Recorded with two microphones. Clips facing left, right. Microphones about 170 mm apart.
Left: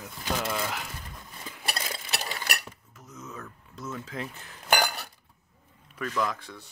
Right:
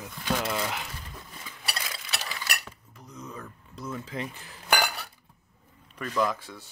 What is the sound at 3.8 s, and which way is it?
Speech, centre (ahead or behind).